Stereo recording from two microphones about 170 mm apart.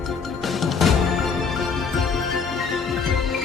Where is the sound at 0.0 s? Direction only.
Centre (ahead or behind).